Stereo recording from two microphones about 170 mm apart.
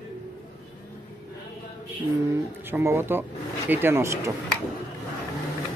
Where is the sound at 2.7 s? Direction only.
15° right (ahead or behind).